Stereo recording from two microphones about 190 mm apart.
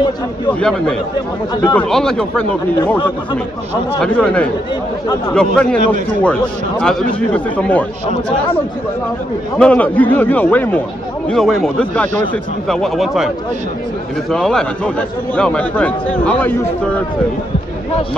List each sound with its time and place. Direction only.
0.5 s speech: 5° left (ahead or behind)
4.0 s a man's voice: 5° left (ahead or behind)
6.8 s speech: 5° left (ahead or behind)
9.6 s a man's voice: 5° left (ahead or behind)
14.3 s a man's voice: 5° left (ahead or behind)